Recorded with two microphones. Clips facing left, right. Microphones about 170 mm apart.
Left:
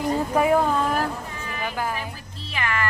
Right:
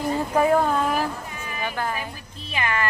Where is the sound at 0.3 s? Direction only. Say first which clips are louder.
Right 1 dB; 5° left (ahead or behind).